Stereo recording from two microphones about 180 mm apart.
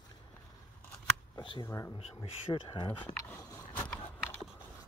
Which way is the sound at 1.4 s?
25° left (ahead or behind).